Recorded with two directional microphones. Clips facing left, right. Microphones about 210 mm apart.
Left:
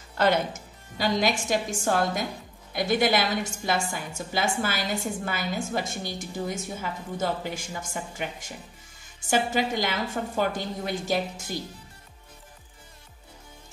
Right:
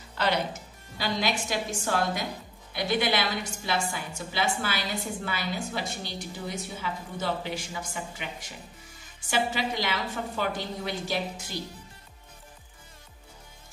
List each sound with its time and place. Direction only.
0.2 s a woman's voice: 45° left (ahead or behind)